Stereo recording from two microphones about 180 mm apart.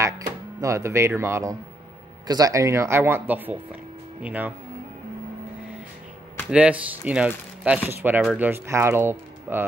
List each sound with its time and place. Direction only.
0.0 s speech: 15° right (ahead or behind)
6.5 s speech: 5° right (ahead or behind)